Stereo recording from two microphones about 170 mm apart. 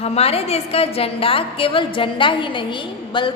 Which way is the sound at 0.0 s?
35° left (ahead or behind).